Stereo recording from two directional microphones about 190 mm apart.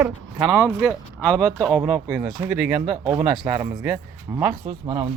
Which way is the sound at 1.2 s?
5° left (ahead or behind).